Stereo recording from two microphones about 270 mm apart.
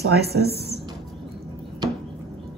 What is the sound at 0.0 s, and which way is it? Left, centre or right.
Speech, right.